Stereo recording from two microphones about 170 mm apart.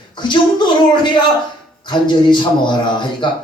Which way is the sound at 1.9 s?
25° left (ahead or behind).